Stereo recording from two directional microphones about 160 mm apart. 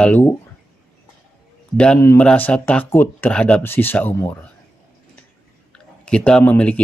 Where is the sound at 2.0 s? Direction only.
15° left (ahead or behind).